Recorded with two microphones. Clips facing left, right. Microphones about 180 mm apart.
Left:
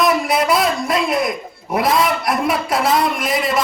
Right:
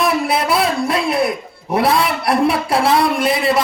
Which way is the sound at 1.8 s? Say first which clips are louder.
Right 1 dB; 30° right (ahead or behind).